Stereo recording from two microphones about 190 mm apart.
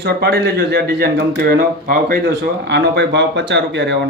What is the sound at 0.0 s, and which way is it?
Speech, 60° right (ahead or behind).